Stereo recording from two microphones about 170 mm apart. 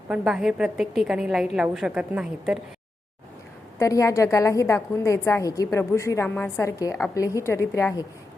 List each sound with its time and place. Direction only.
0.1 s a woman's voice: 5° right (ahead or behind)
3.8 s a woman's voice: 20° left (ahead or behind)